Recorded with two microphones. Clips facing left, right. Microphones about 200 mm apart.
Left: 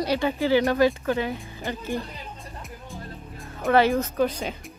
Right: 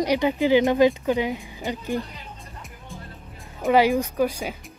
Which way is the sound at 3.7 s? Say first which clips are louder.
Right 1 dB; 15° right (ahead or behind).